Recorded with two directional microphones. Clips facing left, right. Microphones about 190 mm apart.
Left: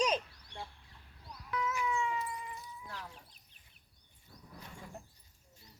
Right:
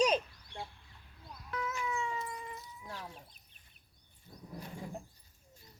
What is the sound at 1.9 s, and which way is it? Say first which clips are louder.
Cat: left 2 dB; 35° right (ahead or behind).